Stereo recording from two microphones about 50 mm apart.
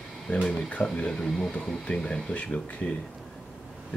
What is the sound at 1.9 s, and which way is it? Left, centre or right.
Speech, left.